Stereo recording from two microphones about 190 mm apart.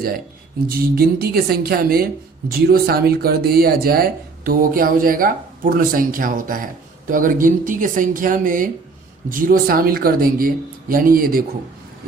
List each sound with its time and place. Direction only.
0.7 s speech: 50° right (ahead or behind)